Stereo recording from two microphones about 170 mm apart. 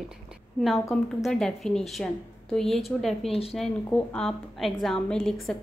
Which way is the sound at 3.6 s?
5° left (ahead or behind).